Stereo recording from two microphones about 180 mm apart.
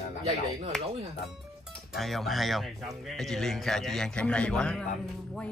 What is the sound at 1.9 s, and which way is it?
Speech, centre (ahead or behind).